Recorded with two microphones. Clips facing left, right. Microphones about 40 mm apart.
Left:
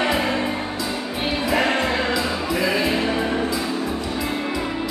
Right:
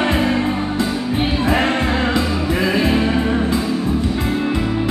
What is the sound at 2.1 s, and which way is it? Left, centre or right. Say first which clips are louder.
Music: right 4 dB; right.